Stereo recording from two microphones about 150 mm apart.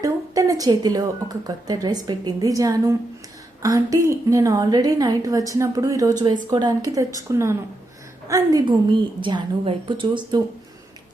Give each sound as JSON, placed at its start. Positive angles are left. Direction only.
{"t": 0.0, "sound": "a woman's voice", "side_deg": -25}